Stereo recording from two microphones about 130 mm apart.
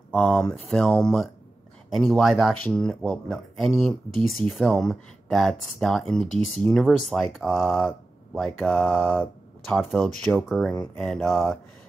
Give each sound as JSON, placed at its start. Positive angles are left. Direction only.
{"t": 0.1, "sound": "speech", "side_deg": 5}